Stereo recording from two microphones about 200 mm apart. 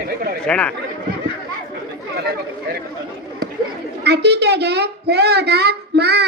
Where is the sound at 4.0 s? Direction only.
55° right (ahead or behind).